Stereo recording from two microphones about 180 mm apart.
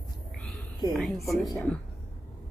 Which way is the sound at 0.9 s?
Centre (ahead or behind).